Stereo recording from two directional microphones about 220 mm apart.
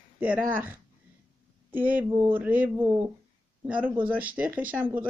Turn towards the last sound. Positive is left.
turn(degrees=-10)  # may be behind; listen again after turning